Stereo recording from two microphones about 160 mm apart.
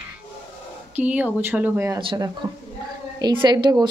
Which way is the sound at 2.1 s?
25° right (ahead or behind).